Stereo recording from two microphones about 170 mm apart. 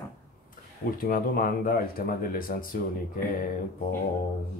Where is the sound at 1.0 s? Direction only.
55° left (ahead or behind).